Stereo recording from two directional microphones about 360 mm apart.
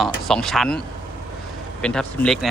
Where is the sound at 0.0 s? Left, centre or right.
Centre.